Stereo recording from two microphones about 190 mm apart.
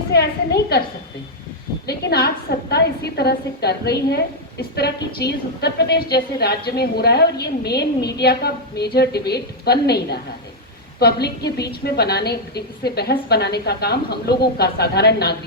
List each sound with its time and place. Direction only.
0.1 s a woman's voice: 60° left (ahead or behind)
1.9 s a woman's voice: 55° left (ahead or behind)